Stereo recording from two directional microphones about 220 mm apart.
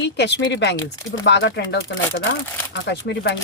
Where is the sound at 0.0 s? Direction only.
50° left (ahead or behind).